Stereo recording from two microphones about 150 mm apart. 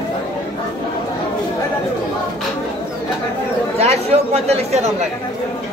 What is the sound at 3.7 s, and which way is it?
Chatter, 45° right (ahead or behind).